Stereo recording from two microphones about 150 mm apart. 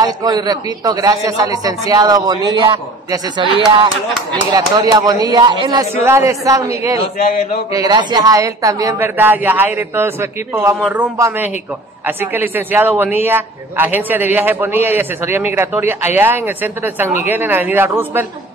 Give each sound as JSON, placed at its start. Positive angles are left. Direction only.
{"t": 0.0, "sound": "a man's voice", "side_deg": -25}
{"t": 9.1, "sound": "a man's voice", "side_deg": -10}